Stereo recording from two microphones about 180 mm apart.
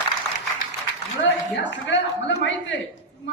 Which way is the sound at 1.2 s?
90° left.